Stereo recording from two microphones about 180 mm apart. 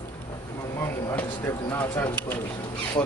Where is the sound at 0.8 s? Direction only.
10° left (ahead or behind).